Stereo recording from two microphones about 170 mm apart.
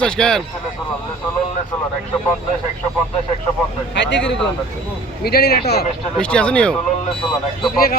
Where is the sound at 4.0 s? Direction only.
90° left.